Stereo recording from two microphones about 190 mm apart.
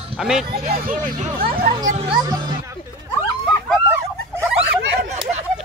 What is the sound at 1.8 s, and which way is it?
Speech, 40° right (ahead or behind).